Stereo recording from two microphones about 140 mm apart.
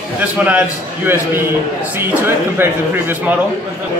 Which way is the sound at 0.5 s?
10° right (ahead or behind).